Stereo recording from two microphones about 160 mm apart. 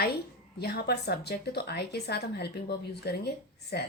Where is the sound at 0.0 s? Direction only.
80° left.